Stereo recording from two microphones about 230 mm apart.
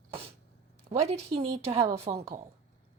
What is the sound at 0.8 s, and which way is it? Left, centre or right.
Speech, right.